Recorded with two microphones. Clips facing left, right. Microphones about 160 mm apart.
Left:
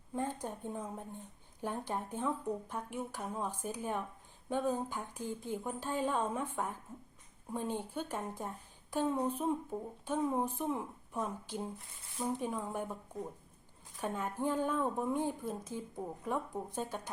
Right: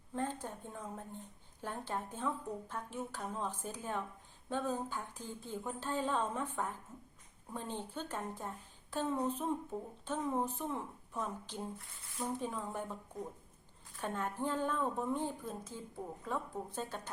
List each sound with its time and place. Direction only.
0.1 s a woman's voice: 15° left (ahead or behind)
14.0 s speech: 10° left (ahead or behind)